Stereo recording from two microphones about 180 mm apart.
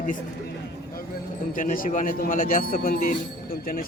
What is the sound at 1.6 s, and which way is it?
Speech, 50° left (ahead or behind).